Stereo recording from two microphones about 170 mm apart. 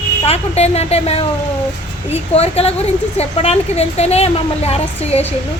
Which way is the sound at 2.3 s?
35° left (ahead or behind).